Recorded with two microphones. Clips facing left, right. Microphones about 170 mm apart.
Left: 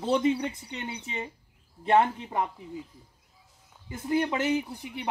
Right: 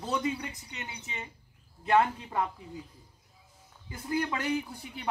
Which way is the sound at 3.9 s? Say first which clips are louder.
Left 4 dB; 25° left (ahead or behind).